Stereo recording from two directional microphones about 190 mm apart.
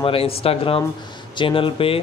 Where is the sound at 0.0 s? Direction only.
30° left (ahead or behind).